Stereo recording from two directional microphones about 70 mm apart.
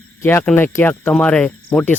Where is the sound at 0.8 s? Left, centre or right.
Left.